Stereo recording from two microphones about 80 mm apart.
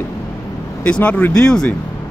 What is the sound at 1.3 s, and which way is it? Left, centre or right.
Speech, centre.